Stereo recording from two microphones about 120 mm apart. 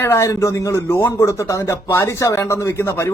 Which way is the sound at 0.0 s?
25° left (ahead or behind).